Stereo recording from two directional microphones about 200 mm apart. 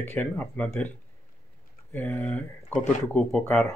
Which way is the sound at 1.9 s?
10° left (ahead or behind).